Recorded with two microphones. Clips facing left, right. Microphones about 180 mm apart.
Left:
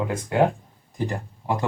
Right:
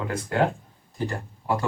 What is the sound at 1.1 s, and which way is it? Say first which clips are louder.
Speech: right 2 dB; 20° left (ahead or behind).